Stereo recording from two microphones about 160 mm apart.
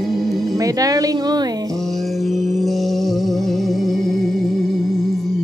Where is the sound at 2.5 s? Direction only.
Centre (ahead or behind).